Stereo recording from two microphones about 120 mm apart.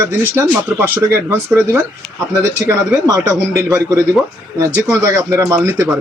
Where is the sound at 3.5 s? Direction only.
25° right (ahead or behind).